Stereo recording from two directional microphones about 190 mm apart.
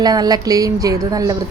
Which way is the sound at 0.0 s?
20° right (ahead or behind).